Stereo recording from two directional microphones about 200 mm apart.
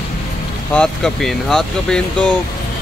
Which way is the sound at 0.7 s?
Centre (ahead or behind).